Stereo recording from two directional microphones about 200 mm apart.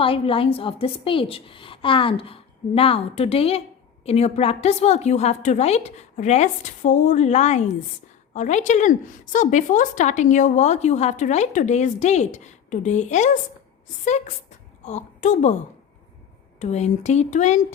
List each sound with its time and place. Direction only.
0.0 s a woman's voice: 25° left (ahead or behind)
16.6 s a woman's voice: 35° left (ahead or behind)